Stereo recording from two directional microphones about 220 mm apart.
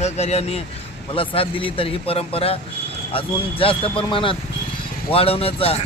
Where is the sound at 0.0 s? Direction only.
30° left (ahead or behind).